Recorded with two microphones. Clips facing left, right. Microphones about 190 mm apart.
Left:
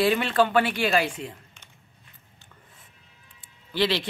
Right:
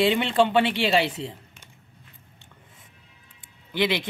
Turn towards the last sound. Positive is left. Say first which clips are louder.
# even
turn(degrees=-15)  # may be behind; listen again after turning